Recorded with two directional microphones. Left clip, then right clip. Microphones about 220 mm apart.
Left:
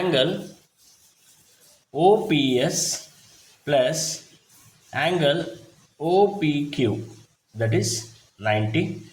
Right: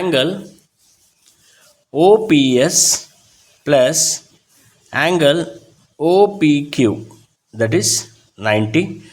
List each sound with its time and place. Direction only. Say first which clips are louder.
0.0 s speech: right 5 dB; 35° right (ahead or behind)
2.0 s speech: right 7 dB; 45° right (ahead or behind)